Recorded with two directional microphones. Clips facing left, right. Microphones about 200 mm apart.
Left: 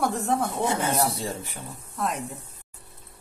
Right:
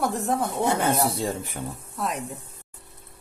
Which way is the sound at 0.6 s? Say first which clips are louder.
Right 2 dB; 55° right (ahead or behind).